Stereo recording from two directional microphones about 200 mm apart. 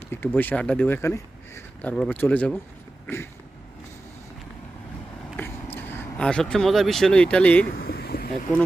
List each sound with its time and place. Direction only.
0.1 s speech: 10° left (ahead or behind)
5.4 s speech: 10° left (ahead or behind)
7.8 s a sound: 50° left (ahead or behind)